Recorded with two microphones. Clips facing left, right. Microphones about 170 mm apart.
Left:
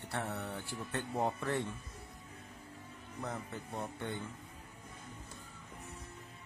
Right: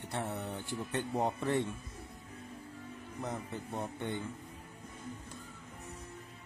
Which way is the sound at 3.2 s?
20° right (ahead or behind).